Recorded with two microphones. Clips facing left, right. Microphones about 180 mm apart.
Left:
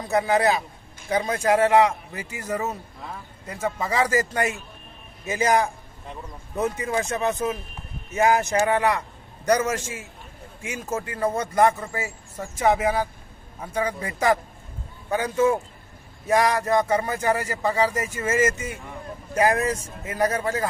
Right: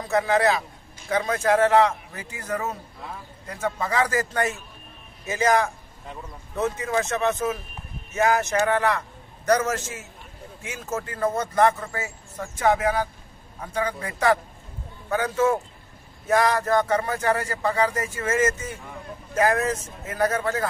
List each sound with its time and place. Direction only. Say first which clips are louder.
0.1 s a man's voice: even; 15° left (ahead or behind)